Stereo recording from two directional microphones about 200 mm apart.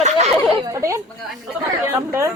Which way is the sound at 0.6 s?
15° right (ahead or behind).